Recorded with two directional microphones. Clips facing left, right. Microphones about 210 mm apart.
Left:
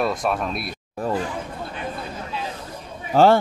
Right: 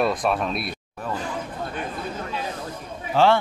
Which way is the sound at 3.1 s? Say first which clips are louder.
Left 4 dB; 40° left (ahead or behind).